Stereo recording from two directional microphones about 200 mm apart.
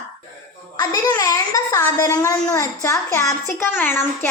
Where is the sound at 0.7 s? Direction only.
15° left (ahead or behind).